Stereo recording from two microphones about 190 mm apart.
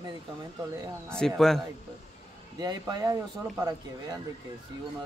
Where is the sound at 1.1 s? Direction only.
Centre (ahead or behind).